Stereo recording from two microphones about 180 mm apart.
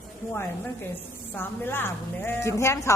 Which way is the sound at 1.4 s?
10° left (ahead or behind).